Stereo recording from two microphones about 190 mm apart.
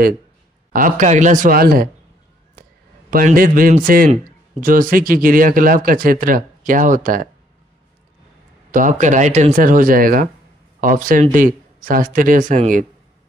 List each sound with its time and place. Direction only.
0.7 s a man's voice: 45° right (ahead or behind)
3.1 s a man's voice: 50° right (ahead or behind)
8.7 s a man's voice: 40° right (ahead or behind)